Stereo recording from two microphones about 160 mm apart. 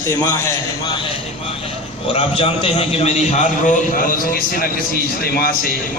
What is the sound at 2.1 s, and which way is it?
A man's voice, 35° left (ahead or behind).